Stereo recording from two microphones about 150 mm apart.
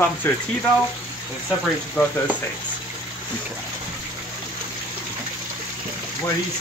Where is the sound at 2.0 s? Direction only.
10° left (ahead or behind).